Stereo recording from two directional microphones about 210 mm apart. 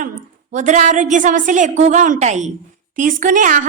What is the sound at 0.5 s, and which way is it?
A woman's voice, 35° right (ahead or behind).